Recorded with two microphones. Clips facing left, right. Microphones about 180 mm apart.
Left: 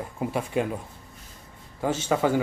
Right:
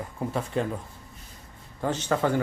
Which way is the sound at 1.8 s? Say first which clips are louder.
Left 2 dB; 10° left (ahead or behind).